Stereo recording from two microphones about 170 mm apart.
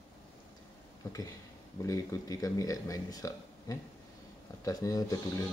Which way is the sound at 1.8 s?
20° left (ahead or behind).